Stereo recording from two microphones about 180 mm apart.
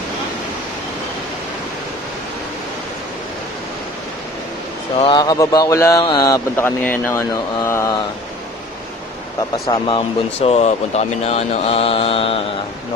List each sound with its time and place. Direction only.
4.9 s speech: 25° left (ahead or behind)
9.7 s speech: 30° left (ahead or behind)